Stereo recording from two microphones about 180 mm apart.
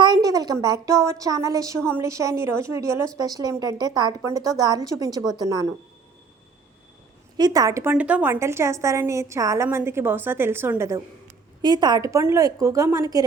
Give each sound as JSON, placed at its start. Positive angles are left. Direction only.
{"t": 0.0, "sound": "a woman's voice", "side_deg": -20}
{"t": 7.3, "sound": "a woman's voice", "side_deg": -20}